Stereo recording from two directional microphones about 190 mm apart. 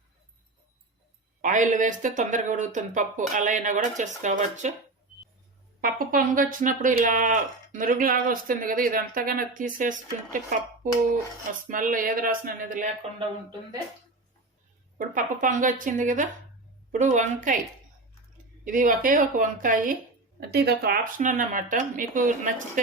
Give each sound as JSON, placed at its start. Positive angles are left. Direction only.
{"t": 1.4, "sound": "speech", "side_deg": -40}
{"t": 5.8, "sound": "speech", "side_deg": -45}
{"t": 11.7, "sound": "speech", "side_deg": -45}
{"t": 14.9, "sound": "speech", "side_deg": -45}
{"t": 18.6, "sound": "speech", "side_deg": -45}
{"t": 20.5, "sound": "speech", "side_deg": -55}